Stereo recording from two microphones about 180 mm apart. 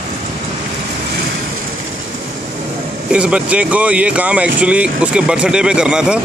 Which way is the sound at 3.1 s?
5° right (ahead or behind).